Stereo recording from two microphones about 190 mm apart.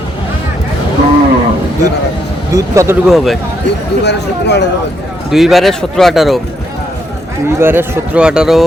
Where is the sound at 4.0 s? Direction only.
65° left (ahead or behind).